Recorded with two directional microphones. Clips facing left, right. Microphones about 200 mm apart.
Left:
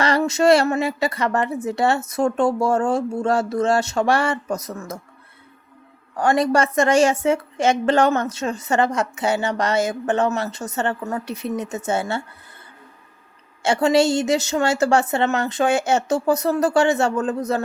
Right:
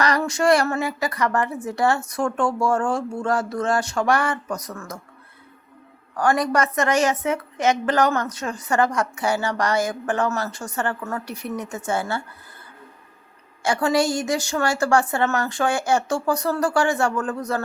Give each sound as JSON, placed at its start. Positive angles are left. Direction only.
{"t": 0.0, "sound": "a woman's voice", "side_deg": 25}
{"t": 6.1, "sound": "a woman's voice", "side_deg": 25}
{"t": 13.6, "sound": "a woman's voice", "side_deg": 25}